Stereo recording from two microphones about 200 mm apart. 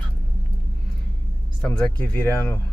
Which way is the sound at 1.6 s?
5° left (ahead or behind).